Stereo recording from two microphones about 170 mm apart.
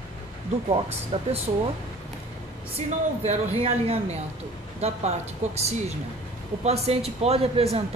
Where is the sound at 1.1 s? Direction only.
35° right (ahead or behind).